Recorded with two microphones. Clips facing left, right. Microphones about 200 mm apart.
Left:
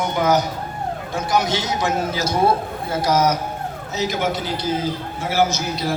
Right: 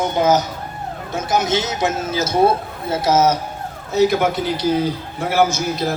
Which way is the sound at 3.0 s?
25° right (ahead or behind).